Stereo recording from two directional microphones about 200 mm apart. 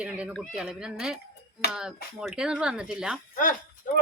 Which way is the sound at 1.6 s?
55° left (ahead or behind).